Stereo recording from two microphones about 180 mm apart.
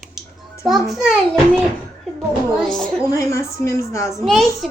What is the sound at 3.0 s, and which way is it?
A woman's voice, 15° left (ahead or behind).